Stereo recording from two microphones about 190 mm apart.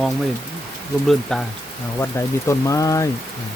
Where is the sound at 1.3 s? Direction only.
5° left (ahead or behind).